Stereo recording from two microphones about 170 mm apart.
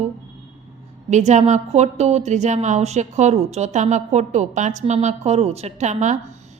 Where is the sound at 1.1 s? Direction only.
45° right (ahead or behind).